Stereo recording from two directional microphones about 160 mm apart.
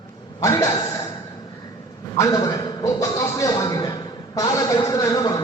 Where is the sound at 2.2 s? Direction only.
20° left (ahead or behind).